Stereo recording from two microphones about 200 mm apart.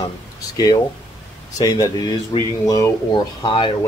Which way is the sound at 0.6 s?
20° left (ahead or behind).